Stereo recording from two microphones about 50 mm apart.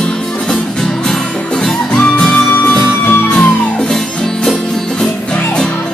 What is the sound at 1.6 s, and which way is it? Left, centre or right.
Music, centre.